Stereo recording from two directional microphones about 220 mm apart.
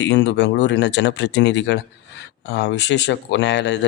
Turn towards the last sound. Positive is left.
turn(degrees=50)  # may be behind; listen again after turning